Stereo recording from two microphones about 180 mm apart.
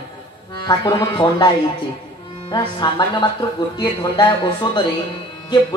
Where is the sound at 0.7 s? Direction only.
20° left (ahead or behind).